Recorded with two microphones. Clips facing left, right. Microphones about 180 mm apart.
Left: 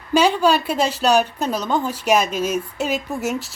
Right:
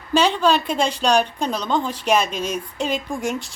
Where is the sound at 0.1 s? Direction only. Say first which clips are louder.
Left 1 dB; 10° left (ahead or behind).